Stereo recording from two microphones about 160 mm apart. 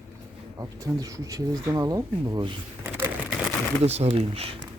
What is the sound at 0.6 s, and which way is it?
Speech, 20° right (ahead or behind).